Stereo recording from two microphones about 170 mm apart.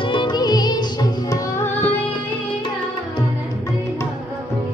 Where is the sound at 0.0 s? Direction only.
30° left (ahead or behind).